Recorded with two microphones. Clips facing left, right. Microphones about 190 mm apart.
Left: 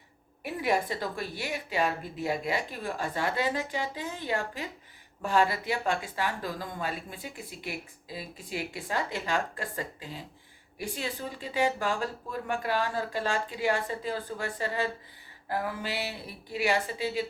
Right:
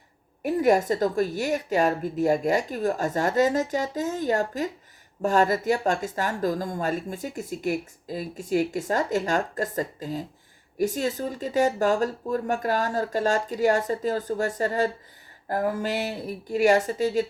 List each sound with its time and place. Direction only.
0.4 s speech: 45° right (ahead or behind)